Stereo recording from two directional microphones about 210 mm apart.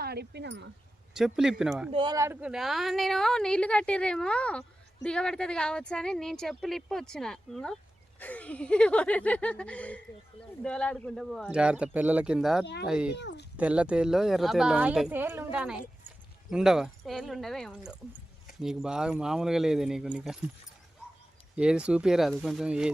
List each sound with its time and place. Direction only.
0.0 s speech: 50° right (ahead or behind)
1.1 s speech: 5° right (ahead or behind)
1.9 s speech: 20° right (ahead or behind); by 13.1 s 5° right (ahead or behind)
13.1 s speech: 55° left (ahead or behind)
13.6 s speech: 5° right (ahead or behind)
21.5 s speech: 5° right (ahead or behind)